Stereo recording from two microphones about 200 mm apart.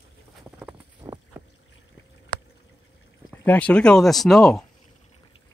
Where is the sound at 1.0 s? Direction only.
20° right (ahead or behind).